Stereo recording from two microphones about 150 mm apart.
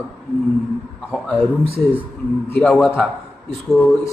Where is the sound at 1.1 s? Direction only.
10° left (ahead or behind).